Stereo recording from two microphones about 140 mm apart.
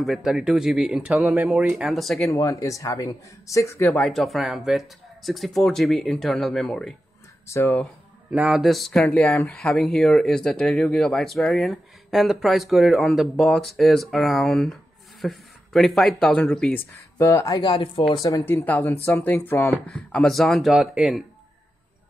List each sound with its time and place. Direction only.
0.0 s speech: centre (ahead or behind)
2.2 s speech: 20° left (ahead or behind)
4.0 s speech: centre (ahead or behind)
7.8 s speech: 5° right (ahead or behind)
17.2 s speech: 20° left (ahead or behind); by 21.2 s 5° right (ahead or behind)